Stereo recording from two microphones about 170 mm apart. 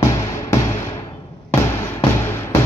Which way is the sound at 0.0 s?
15° left (ahead or behind).